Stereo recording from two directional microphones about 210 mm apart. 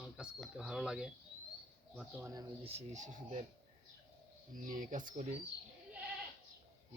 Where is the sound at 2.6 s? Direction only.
30° right (ahead or behind).